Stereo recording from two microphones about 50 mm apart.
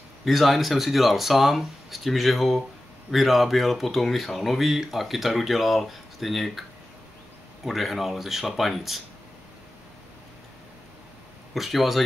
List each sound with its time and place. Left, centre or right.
0.2 s speech: centre
7.6 s speech: centre
11.5 s speech: centre